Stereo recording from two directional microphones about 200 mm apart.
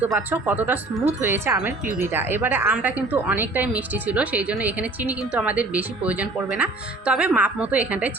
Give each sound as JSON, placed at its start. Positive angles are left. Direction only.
{"t": 0.0, "sound": "speech", "side_deg": -10}